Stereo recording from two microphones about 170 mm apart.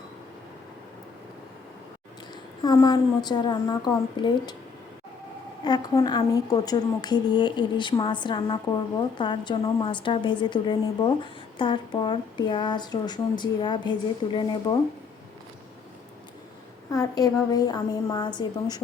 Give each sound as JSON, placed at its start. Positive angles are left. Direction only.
{"t": 2.3, "sound": "speech", "side_deg": 25}
{"t": 5.6, "sound": "speech", "side_deg": 25}
{"t": 16.9, "sound": "speech", "side_deg": 20}